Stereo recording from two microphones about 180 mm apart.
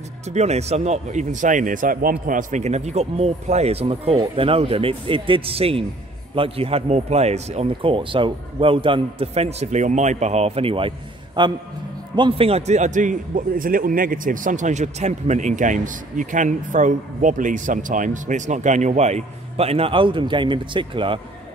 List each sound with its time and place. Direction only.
0.3 s a man's voice: 35° right (ahead or behind)